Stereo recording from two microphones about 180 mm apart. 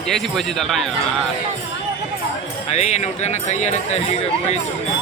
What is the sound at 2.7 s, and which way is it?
Speech, 35° left (ahead or behind).